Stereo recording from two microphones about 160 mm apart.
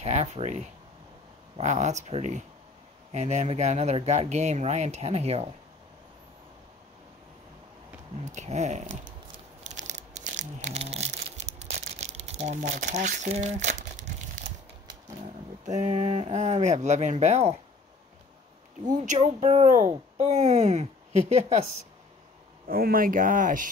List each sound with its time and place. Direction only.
0.0 s speech: 45° right (ahead or behind)
1.6 s speech: 50° right (ahead or behind)
8.3 s speech: 45° right (ahead or behind)
9.7 s a sound: 50° right (ahead or behind)
15.6 s speech: 45° right (ahead or behind)
19.0 s speech: 45° right (ahead or behind)
22.7 s speech: 65° right (ahead or behind)